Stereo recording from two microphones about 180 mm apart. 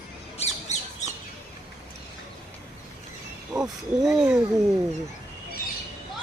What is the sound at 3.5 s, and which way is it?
Speech, 5° right (ahead or behind).